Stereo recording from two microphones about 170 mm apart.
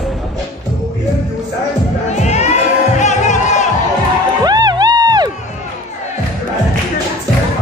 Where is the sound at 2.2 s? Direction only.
40° left (ahead or behind).